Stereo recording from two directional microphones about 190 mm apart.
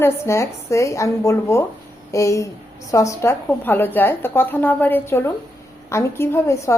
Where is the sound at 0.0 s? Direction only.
15° left (ahead or behind).